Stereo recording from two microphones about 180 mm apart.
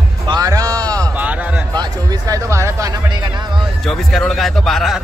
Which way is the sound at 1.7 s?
20° right (ahead or behind).